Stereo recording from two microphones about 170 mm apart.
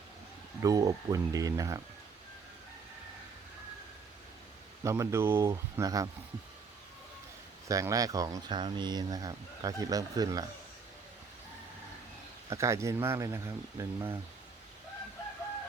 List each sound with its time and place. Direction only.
0.6 s speech: 20° right (ahead or behind)
4.8 s speech: 15° right (ahead or behind)
7.7 s speech: 20° right (ahead or behind)
12.5 s speech: 15° right (ahead or behind)